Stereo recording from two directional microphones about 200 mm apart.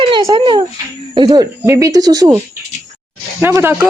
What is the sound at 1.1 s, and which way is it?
Speech, 20° right (ahead or behind).